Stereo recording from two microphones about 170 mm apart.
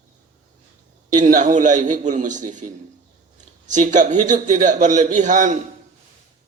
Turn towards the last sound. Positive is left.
turn(degrees=-45)  # may be behind; listen again after turning